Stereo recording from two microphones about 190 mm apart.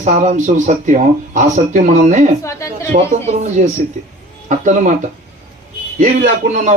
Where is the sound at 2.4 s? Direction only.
15° left (ahead or behind).